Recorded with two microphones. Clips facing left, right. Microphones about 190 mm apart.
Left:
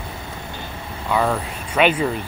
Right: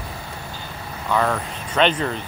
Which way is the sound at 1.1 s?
10° left (ahead or behind).